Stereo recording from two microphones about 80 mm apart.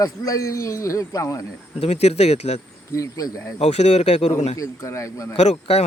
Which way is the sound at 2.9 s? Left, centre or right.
Left.